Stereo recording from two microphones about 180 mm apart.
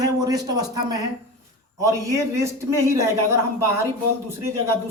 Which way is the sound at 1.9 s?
15° right (ahead or behind).